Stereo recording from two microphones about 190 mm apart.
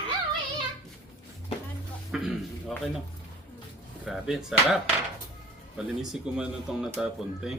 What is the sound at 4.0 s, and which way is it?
Speech, centre (ahead or behind).